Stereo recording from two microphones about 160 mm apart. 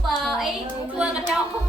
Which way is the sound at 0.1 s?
Centre (ahead or behind).